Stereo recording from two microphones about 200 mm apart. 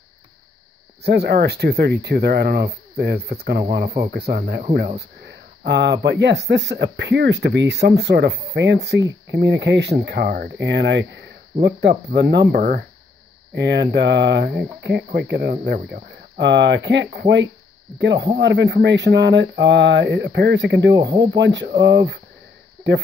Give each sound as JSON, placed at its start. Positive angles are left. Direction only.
{"t": 1.0, "sound": "speech", "side_deg": -55}
{"t": 6.5, "sound": "mantra", "side_deg": -60}
{"t": 11.6, "sound": "speech", "side_deg": -55}
{"t": 13.6, "sound": "mantra", "side_deg": -60}
{"t": 15.1, "sound": "speech", "side_deg": -55}
{"t": 15.6, "sound": "mantra", "side_deg": -55}
{"t": 20.9, "sound": "speech", "side_deg": -20}
{"t": 21.4, "sound": "mantra", "side_deg": -60}